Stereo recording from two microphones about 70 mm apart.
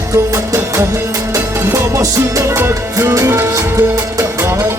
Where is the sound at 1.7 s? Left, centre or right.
Right.